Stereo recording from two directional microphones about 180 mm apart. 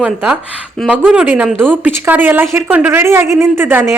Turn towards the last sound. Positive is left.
turn(degrees=-10)  # may be behind; listen again after turning